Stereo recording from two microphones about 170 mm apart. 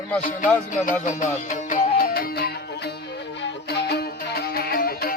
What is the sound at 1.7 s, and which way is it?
Music, 65° left (ahead or behind).